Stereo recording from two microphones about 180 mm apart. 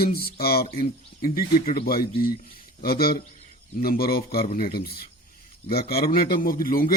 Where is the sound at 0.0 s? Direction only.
55° left (ahead or behind).